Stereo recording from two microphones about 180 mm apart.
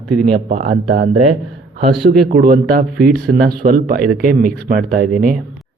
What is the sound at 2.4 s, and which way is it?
Speech, 50° right (ahead or behind).